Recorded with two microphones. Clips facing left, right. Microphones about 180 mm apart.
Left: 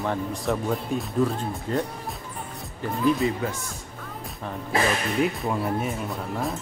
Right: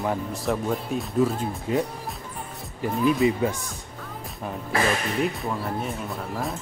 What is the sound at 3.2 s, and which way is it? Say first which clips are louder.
Speech: right 4 dB; 15° right (ahead or behind).